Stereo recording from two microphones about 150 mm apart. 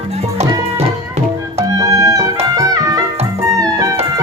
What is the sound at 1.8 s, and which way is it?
Music, 25° right (ahead or behind).